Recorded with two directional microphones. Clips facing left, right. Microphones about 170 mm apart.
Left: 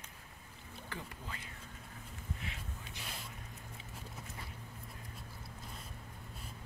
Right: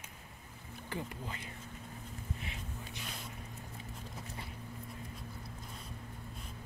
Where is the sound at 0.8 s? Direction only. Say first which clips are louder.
Right 6 dB; 20° right (ahead or behind).